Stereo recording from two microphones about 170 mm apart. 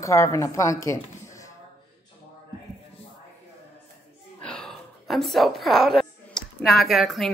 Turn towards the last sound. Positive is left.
turn(degrees=0)  # may be behind; listen again after turning